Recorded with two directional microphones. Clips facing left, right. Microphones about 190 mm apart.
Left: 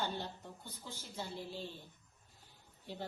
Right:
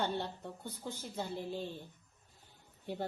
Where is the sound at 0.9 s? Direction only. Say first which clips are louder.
Right 5 dB; 55° right (ahead or behind).